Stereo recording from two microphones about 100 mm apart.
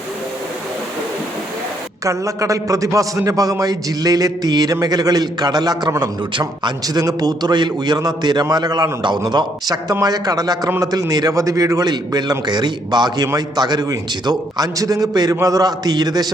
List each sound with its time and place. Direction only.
2.0 s a man's voice: 30° right (ahead or behind)